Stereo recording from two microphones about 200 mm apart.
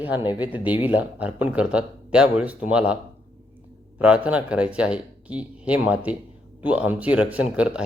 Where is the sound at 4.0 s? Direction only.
5° right (ahead or behind).